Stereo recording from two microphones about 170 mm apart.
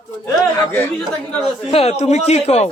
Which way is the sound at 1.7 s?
35° left (ahead or behind).